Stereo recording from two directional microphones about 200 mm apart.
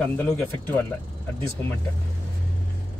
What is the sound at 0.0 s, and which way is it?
Speech, 10° left (ahead or behind).